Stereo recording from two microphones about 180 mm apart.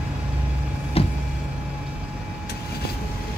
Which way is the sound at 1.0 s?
30° left (ahead or behind).